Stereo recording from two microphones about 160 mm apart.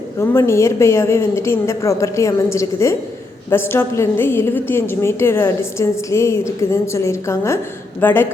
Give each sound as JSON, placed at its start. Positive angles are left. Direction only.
{"t": 0.2, "sound": "a woman's voice", "side_deg": 15}